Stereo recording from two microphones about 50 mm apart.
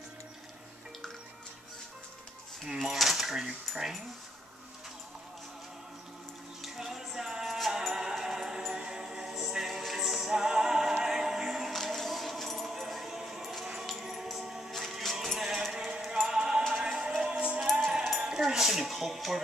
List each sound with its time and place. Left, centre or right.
2.6 s a sound: centre
3.4 s speech: centre
6.6 s music: centre
11.8 s keys jangling: centre
16.1 s music: centre
17.6 s music: centre
17.9 s a sound: centre